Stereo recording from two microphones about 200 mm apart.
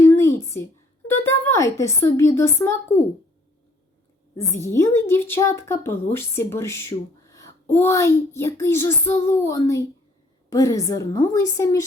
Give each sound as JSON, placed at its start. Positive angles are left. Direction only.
{"t": 0.2, "sound": "a sound", "side_deg": 15}
{"t": 1.8, "sound": "a woman's voice", "side_deg": 15}
{"t": 4.4, "sound": "a woman's voice", "side_deg": 15}